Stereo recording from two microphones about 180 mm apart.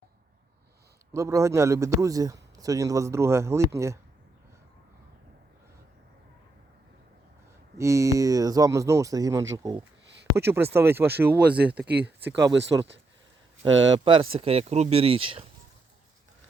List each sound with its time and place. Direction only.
1.1 s a man's voice: 15° right (ahead or behind)
7.8 s a man's voice: 15° right (ahead or behind)
12.7 s speech: 20° right (ahead or behind)
13.7 s speech: 90° right
14.0 s speech: 30° right (ahead or behind)